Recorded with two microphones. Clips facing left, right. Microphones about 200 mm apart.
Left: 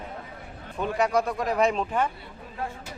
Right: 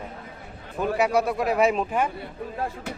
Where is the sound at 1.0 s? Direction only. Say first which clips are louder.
Right 2 dB; 10° right (ahead or behind).